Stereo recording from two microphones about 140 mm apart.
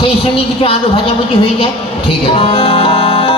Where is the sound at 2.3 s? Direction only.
40° left (ahead or behind).